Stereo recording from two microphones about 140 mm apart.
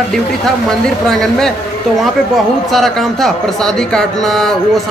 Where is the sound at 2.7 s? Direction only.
Centre (ahead or behind).